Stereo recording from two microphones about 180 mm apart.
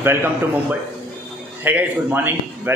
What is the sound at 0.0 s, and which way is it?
Speech, 10° right (ahead or behind).